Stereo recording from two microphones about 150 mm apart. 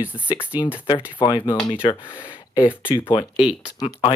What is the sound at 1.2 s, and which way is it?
Speech, 30° left (ahead or behind).